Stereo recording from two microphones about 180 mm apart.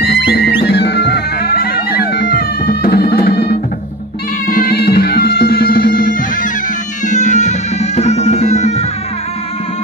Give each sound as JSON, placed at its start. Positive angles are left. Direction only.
{"t": 0.0, "sound": "music", "side_deg": 60}